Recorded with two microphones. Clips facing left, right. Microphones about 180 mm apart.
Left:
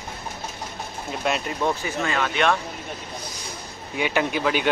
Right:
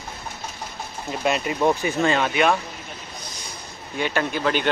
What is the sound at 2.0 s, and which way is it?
Speech, 25° right (ahead or behind).